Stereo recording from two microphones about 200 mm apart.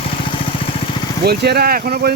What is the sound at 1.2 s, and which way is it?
Speech, 55° right (ahead or behind).